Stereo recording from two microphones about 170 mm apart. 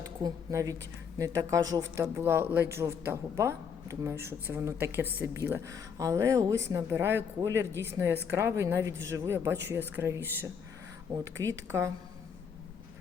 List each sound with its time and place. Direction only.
0.0 s a woman's voice: 20° right (ahead or behind)